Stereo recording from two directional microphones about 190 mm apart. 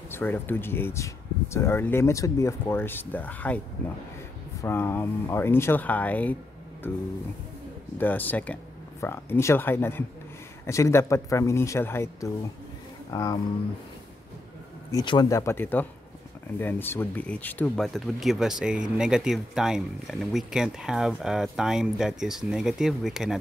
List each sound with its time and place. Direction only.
0.1 s speech: 10° left (ahead or behind)
14.9 s speech: 20° left (ahead or behind); by 23.3 s centre (ahead or behind)